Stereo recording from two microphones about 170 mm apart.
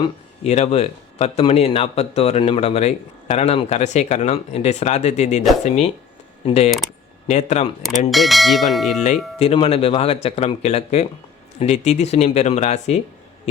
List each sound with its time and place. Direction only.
0.0 s speech: 40° left (ahead or behind)
7.8 s bell: centre (ahead or behind)
9.4 s speech: 35° left (ahead or behind)